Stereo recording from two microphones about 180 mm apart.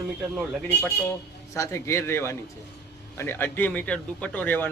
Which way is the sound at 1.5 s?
15° left (ahead or behind).